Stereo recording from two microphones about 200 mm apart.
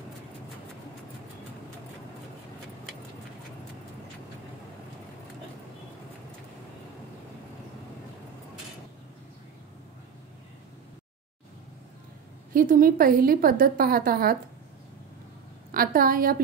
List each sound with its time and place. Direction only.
12.5 s a woman's voice: 45° right (ahead or behind)
15.7 s a woman's voice: 45° right (ahead or behind)